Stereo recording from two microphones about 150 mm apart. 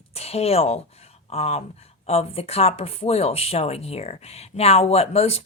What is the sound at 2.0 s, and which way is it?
Speech, 40° left (ahead or behind).